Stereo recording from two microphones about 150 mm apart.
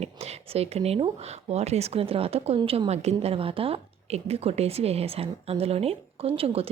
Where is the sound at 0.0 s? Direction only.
45° right (ahead or behind).